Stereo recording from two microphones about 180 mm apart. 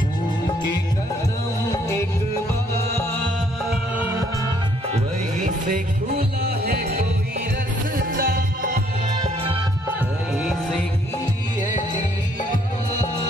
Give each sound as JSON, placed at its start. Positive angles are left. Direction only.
{"t": 1.7, "sound": "music", "side_deg": 15}
{"t": 3.9, "sound": "music", "side_deg": -10}
{"t": 4.9, "sound": "music", "side_deg": -45}
{"t": 9.2, "sound": "music", "side_deg": -30}
{"t": 10.3, "sound": "music", "side_deg": 5}